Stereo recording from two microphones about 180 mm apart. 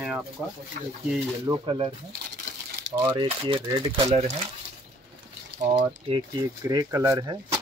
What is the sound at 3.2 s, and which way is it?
Speech, 30° right (ahead or behind).